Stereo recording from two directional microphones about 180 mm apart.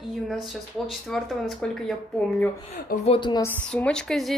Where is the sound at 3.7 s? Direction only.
5° left (ahead or behind).